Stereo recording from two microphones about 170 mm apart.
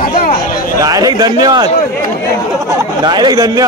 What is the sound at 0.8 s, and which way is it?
Speech, 20° right (ahead or behind).